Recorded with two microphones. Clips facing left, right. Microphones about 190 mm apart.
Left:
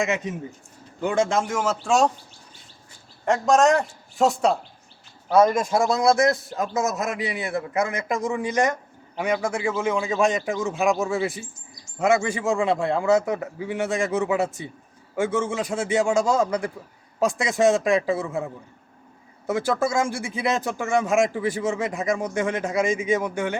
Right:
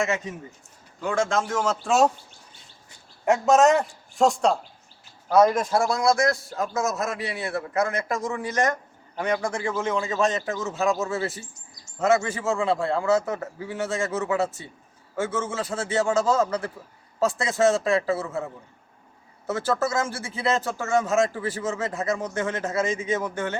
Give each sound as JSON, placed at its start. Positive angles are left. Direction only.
{"t": 1.0, "sound": "speech", "side_deg": 20}
{"t": 1.8, "sound": "a man's voice", "side_deg": -5}
{"t": 3.2, "sound": "a man's voice", "side_deg": -5}
{"t": 5.5, "sound": "speech", "side_deg": 15}